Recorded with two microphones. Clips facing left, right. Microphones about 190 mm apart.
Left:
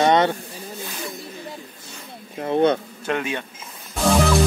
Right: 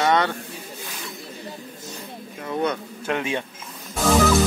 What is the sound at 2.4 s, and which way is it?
Speech, 30° left (ahead or behind).